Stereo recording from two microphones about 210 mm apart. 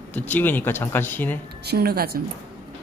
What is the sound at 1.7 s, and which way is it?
Speech, 45° right (ahead or behind).